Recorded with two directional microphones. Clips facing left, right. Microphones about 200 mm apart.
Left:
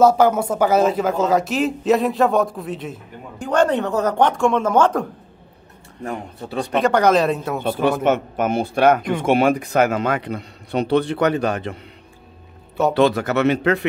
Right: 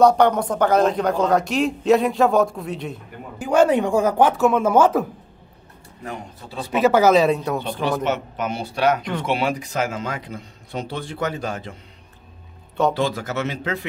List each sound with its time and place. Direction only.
0.0 s speech: 5° left (ahead or behind)
6.6 s speech: 5° right (ahead or behind)
8.0 s a man's voice: 50° left (ahead or behind)
12.9 s speech: 65° left (ahead or behind)